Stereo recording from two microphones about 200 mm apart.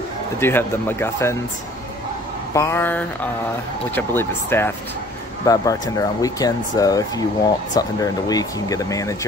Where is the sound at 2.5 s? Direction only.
15° left (ahead or behind).